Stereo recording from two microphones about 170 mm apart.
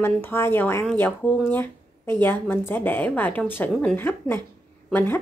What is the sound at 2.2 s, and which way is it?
A woman's voice, 10° left (ahead or behind).